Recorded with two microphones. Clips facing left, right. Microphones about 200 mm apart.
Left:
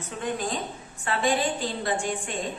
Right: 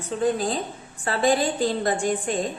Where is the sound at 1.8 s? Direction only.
45° right (ahead or behind).